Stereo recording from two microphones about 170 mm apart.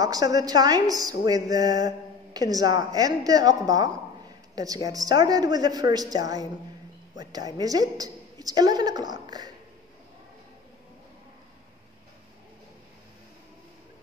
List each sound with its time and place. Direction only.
0.0 s a woman's voice: 20° right (ahead or behind)